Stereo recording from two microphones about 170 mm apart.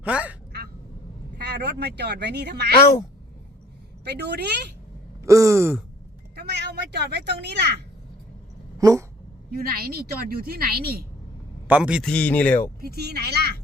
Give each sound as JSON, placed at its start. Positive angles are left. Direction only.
{"t": 0.0, "sound": "speech", "side_deg": -10}
{"t": 1.4, "sound": "speech", "side_deg": -75}
{"t": 4.0, "sound": "speech", "side_deg": -70}
{"t": 5.2, "sound": "a sound", "side_deg": -20}
{"t": 6.3, "sound": "speech", "side_deg": -70}
{"t": 8.8, "sound": "speech", "side_deg": -20}
{"t": 9.5, "sound": "a woman's voice", "side_deg": -65}
{"t": 11.7, "sound": "a man's voice", "side_deg": -5}
{"t": 12.0, "sound": "speech", "side_deg": 5}
{"t": 12.8, "sound": "speech", "side_deg": -70}